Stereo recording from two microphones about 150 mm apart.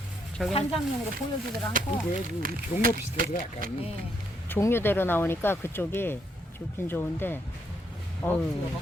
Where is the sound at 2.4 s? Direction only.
70° right (ahead or behind).